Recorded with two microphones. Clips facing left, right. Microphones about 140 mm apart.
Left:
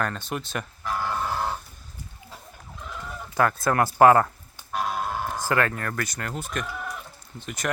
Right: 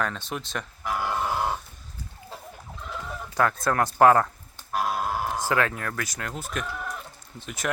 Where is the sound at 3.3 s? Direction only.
5° left (ahead or behind).